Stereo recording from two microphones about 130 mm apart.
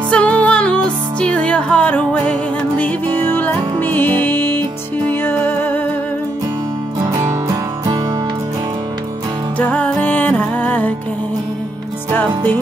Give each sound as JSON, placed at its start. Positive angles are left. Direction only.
{"t": 0.1, "sound": "music", "side_deg": 10}
{"t": 7.0, "sound": "music", "side_deg": -25}
{"t": 9.6, "sound": "music", "side_deg": 10}